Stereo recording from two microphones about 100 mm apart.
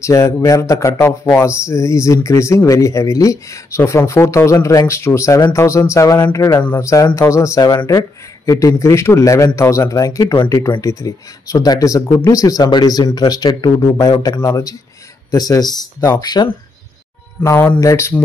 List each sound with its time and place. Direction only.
0.0 s speech: 30° left (ahead or behind)
17.4 s speech: 25° left (ahead or behind)